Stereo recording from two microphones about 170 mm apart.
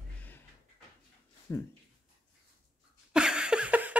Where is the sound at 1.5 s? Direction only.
15° left (ahead or behind).